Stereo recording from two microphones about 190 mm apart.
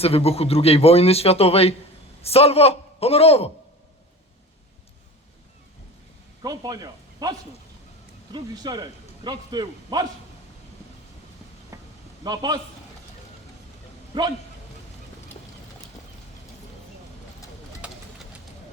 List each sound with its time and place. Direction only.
0.0 s a man's voice: 30° left (ahead or behind)
6.4 s a man's voice: 20° right (ahead or behind)
11.7 s a sound: 15° right (ahead or behind)
12.2 s a man's voice: 20° right (ahead or behind)
14.1 s a man's voice: 25° right (ahead or behind)